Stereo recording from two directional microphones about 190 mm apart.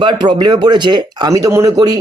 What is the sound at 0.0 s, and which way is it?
Speech, 25° right (ahead or behind).